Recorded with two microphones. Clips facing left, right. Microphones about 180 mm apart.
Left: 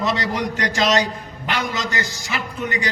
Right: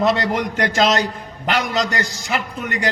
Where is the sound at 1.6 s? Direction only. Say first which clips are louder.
Right 4 dB; 60° right (ahead or behind).